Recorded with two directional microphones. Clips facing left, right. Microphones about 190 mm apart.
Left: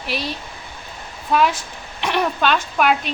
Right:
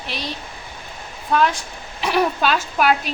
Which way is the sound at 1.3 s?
5° left (ahead or behind).